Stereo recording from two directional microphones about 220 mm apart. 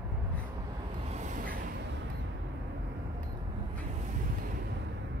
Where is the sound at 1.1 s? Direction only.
35° right (ahead or behind).